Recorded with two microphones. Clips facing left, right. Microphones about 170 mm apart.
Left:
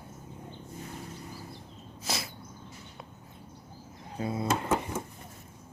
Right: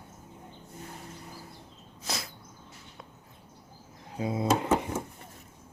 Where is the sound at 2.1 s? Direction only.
Centre (ahead or behind).